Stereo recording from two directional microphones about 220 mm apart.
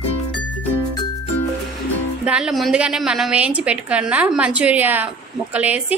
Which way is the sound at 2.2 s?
5° right (ahead or behind).